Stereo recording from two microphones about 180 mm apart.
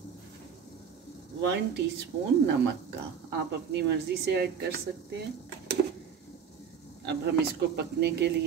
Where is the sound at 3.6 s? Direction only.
70° right (ahead or behind).